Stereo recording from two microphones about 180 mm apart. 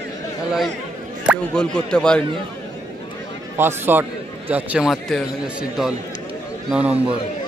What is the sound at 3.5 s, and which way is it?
A man's voice, 10° right (ahead or behind).